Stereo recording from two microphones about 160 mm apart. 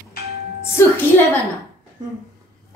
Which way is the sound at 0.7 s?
15° left (ahead or behind).